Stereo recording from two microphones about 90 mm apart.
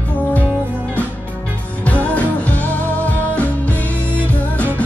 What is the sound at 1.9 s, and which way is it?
Music, 15° left (ahead or behind).